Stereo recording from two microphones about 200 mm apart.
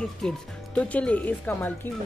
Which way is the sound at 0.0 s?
5° left (ahead or behind).